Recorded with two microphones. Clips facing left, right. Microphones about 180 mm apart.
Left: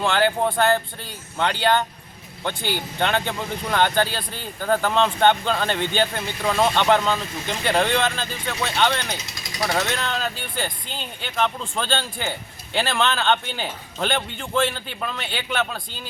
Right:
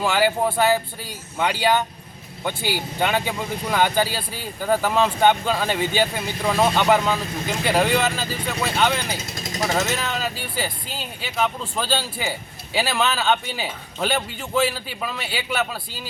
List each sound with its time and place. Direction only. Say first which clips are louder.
0.0 s speech: even; 5° right (ahead or behind)
9.1 s speech: right 5 dB; 50° right (ahead or behind)
9.6 s speech: even; 5° right (ahead or behind)